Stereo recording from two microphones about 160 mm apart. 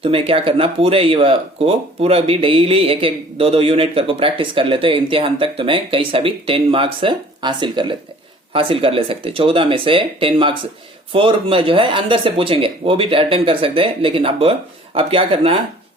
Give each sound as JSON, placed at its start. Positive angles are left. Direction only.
{"t": 0.0, "sound": "speech", "side_deg": -35}